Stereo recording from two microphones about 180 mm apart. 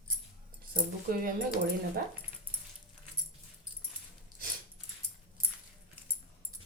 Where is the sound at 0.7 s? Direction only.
50° right (ahead or behind).